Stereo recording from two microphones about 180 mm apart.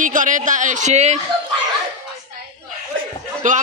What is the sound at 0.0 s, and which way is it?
Speech, 45° right (ahead or behind).